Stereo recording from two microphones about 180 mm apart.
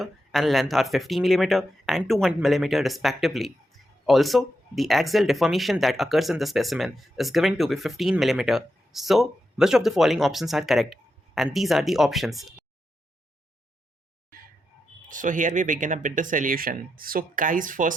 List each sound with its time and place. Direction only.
0.0 s speech: centre (ahead or behind)
15.1 s speech: 45° right (ahead or behind)